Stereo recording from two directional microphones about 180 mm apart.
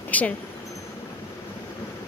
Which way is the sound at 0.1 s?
10° left (ahead or behind).